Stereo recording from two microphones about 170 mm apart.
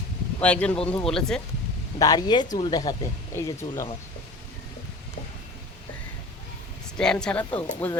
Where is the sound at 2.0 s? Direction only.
25° left (ahead or behind).